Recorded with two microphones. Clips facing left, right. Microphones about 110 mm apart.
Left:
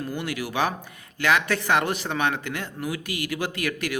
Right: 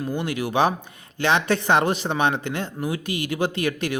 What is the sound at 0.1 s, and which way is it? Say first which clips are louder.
Speech: right 4 dB; 20° right (ahead or behind).